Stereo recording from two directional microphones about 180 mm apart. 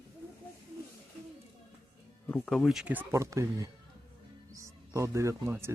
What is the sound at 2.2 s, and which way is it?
Speech, 5° left (ahead or behind).